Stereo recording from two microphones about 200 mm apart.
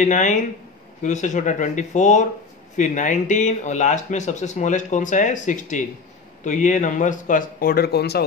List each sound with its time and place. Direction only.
0.0 s speech: 40° left (ahead or behind); by 8.2 s 55° left (ahead or behind)